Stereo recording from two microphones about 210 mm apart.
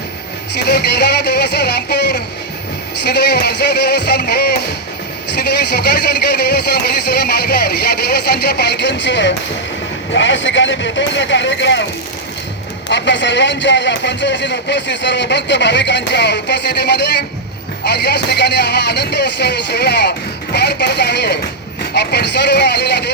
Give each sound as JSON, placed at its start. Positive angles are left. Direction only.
{"t": 0.7, "sound": "music", "side_deg": 50}
{"t": 3.0, "sound": "speech", "side_deg": 50}
{"t": 12.9, "sound": "speech", "side_deg": 55}